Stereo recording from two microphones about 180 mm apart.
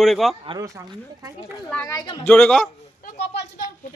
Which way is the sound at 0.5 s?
20° right (ahead or behind).